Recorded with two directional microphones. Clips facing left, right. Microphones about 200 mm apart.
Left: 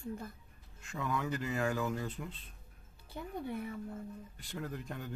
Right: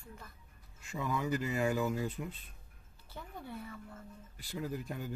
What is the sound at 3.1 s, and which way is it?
Speech, 15° left (ahead or behind).